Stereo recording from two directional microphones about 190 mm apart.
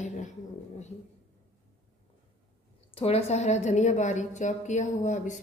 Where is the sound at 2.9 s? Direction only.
30° left (ahead or behind).